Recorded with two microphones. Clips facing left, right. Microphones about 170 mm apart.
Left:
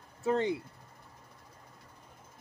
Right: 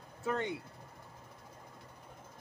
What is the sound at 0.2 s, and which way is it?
Speech, 30° left (ahead or behind).